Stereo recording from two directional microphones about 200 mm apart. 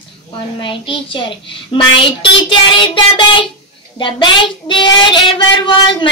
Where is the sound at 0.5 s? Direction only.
25° left (ahead or behind).